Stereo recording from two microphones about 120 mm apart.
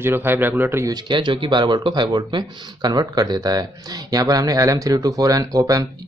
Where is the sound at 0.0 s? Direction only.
20° right (ahead or behind).